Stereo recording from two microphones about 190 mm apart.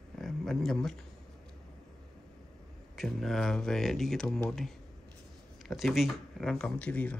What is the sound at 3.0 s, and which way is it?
Speech, centre (ahead or behind).